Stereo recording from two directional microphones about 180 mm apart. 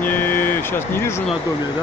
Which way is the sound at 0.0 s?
10° left (ahead or behind).